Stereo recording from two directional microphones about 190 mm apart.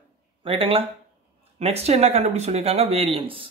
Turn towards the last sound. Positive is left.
turn(degrees=-30)  # may be behind; listen again after turning